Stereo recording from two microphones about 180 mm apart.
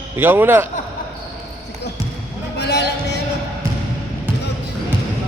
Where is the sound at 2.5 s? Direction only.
65° left (ahead or behind).